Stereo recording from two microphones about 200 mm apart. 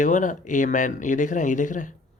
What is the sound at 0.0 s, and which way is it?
Speech, 40° left (ahead or behind).